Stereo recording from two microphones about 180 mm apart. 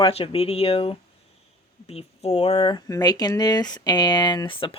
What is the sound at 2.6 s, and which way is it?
Speech, 25° left (ahead or behind).